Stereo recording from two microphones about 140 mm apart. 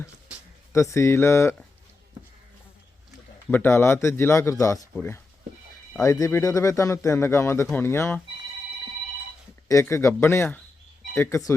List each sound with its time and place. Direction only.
0.7 s speech: 20° left (ahead or behind)
3.5 s speech: 15° left (ahead or behind)
6.0 s speech: 20° left (ahead or behind)
9.6 s speech: 20° left (ahead or behind)